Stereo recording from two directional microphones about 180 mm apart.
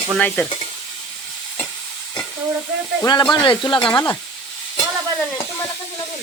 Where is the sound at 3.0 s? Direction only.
20° left (ahead or behind).